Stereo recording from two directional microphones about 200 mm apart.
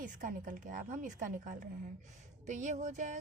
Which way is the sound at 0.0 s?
40° right (ahead or behind).